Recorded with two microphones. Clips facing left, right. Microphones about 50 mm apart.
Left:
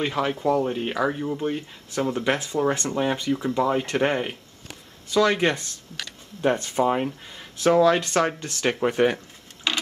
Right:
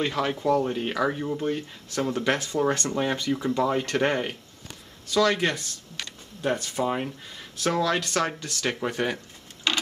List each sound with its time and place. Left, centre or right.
0.0 s speech: centre